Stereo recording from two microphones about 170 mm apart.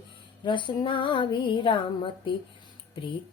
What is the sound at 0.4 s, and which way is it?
Female singing, 30° left (ahead or behind).